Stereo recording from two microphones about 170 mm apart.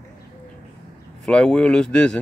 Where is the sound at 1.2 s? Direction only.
5° left (ahead or behind).